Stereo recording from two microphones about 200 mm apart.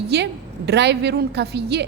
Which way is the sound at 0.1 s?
55° right (ahead or behind).